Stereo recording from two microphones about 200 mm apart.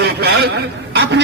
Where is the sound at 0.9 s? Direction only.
60° right (ahead or behind).